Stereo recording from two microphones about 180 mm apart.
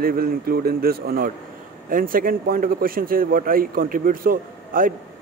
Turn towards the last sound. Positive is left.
turn(degrees=-50)  # may be behind; listen again after turning